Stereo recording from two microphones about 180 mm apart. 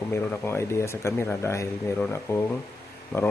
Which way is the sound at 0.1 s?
15° left (ahead or behind).